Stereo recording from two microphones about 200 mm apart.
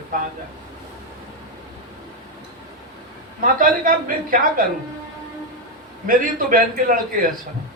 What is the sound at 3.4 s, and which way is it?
A man's voice, 45° right (ahead or behind).